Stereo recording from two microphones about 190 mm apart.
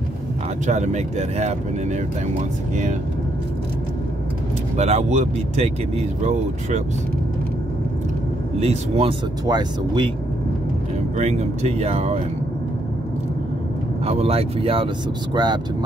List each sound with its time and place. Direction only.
0.7 s speech: 40° right (ahead or behind)
4.7 s speech: 35° right (ahead or behind)
8.5 s speech: 35° right (ahead or behind)
9.5 s speech: 25° right (ahead or behind)
11.1 s speech: 35° right (ahead or behind)
14.0 s speech: 30° right (ahead or behind)